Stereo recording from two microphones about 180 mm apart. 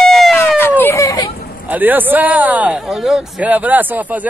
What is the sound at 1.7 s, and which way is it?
Speech, 10° right (ahead or behind).